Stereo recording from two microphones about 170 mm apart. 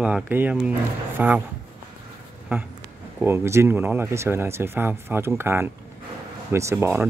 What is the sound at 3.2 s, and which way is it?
Speech, 15° right (ahead or behind).